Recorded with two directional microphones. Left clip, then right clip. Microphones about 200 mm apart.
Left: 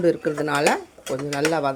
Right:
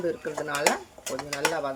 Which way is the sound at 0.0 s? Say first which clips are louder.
Left 9 dB; 45° left (ahead or behind).